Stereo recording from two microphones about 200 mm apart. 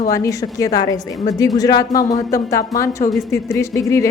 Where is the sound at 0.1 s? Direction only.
15° left (ahead or behind).